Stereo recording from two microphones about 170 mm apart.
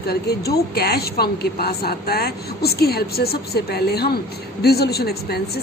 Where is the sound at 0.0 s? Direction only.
70° left (ahead or behind).